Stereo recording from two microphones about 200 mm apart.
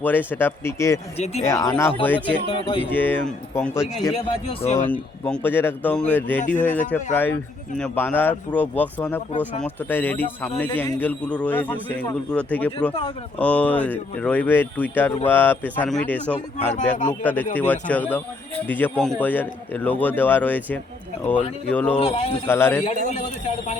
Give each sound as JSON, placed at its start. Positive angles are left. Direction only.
{"t": 0.0, "sound": "speech", "side_deg": 10}
{"t": 1.2, "sound": "speech", "side_deg": 35}
{"t": 1.5, "sound": "speech", "side_deg": 15}
{"t": 2.2, "sound": "speech", "side_deg": 25}
{"t": 2.9, "sound": "speech", "side_deg": 10}
{"t": 4.1, "sound": "speech", "side_deg": 30}
{"t": 4.9, "sound": "speech", "side_deg": 5}
{"t": 16.7, "sound": "speech", "side_deg": 40}
{"t": 17.2, "sound": "speech", "side_deg": 10}
{"t": 21.9, "sound": "speech", "side_deg": 30}
{"t": 22.4, "sound": "speech", "side_deg": 10}